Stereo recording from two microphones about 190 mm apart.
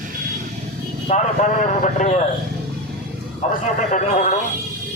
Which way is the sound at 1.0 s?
35° left (ahead or behind).